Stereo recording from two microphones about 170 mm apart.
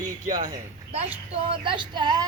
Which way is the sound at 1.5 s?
30° right (ahead or behind).